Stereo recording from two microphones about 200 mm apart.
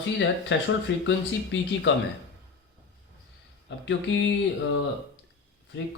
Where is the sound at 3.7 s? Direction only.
65° left (ahead or behind).